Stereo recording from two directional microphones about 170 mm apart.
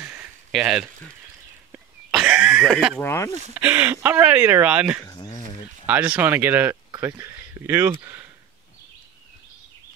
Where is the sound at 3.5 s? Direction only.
10° right (ahead or behind).